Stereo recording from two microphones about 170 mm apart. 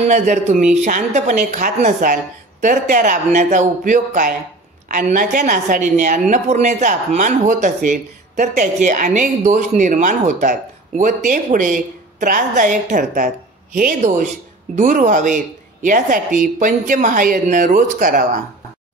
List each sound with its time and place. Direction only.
0.0 s speech: 45° right (ahead or behind)